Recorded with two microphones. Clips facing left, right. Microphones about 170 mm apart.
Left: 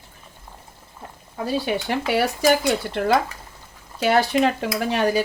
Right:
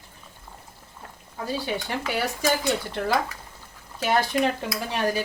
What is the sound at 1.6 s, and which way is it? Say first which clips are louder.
Stir: left 5 dB; 75° left (ahead or behind).